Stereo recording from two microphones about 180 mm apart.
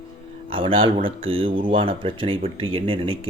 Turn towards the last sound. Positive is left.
turn(degrees=-30)  # may be behind; listen again after turning